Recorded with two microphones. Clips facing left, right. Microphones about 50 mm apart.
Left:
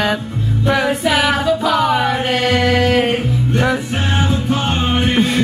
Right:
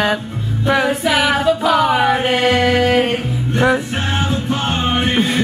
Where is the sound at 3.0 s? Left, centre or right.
Centre.